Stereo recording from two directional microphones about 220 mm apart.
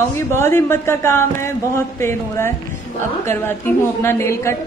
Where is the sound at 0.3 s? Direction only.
10° left (ahead or behind).